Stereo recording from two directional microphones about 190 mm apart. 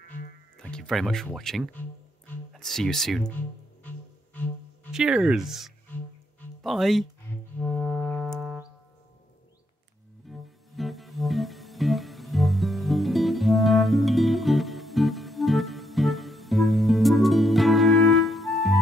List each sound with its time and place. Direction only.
0.6 s speech: 5° left (ahead or behind)
3.8 s music: 10° left (ahead or behind)
4.9 s speech: 5° right (ahead or behind)
7.5 s music: 10° left (ahead or behind)
10.2 s music: centre (ahead or behind)